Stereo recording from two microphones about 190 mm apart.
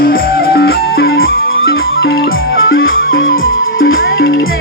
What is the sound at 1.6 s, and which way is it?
Music, 70° left (ahead or behind).